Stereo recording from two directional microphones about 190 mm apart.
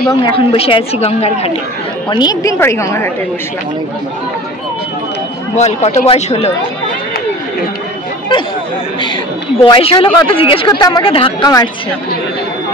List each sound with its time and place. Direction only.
0.2 s a woman's voice: 25° left (ahead or behind)
2.0 s a woman's voice: 20° left (ahead or behind)
5.6 s a woman's voice: 35° left (ahead or behind)
9.6 s speech: 30° left (ahead or behind)